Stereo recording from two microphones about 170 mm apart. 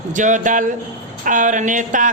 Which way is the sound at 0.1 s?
45° right (ahead or behind).